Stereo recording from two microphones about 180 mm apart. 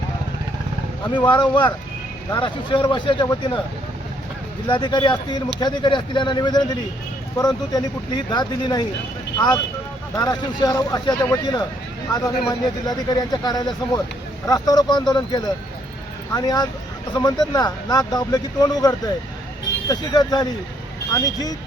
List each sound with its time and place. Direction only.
1.0 s speech: 25° left (ahead or behind)
4.7 s speech: 25° left (ahead or behind)